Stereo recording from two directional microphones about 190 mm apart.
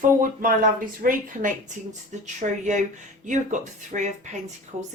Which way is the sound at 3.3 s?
40° right (ahead or behind).